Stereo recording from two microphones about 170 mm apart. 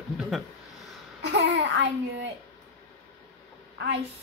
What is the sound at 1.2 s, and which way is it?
Babbling, 90° right.